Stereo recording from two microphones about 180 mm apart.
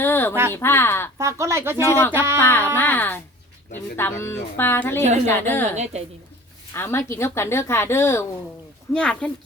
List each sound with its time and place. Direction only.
0.0 s a sound: 10° left (ahead or behind)
0.5 s speech: 15° left (ahead or behind)
1.2 s speech: 15° right (ahead or behind)
1.8 s speech: 15° left (ahead or behind)
2.1 s speech: 15° right (ahead or behind)
2.4 s speech: 10° left (ahead or behind)
5.7 s a woman's voice: 40° right (ahead or behind)
6.7 s a woman's voice: 15° left (ahead or behind)